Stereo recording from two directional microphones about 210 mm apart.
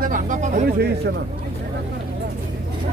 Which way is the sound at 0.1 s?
40° right (ahead or behind).